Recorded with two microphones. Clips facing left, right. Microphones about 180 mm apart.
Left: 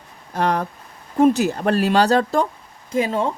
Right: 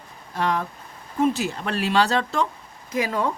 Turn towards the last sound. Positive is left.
turn(degrees=25)  # may be behind; listen again after turning